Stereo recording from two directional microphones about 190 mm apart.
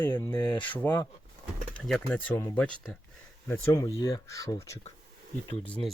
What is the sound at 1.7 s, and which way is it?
Speech, 5° left (ahead or behind).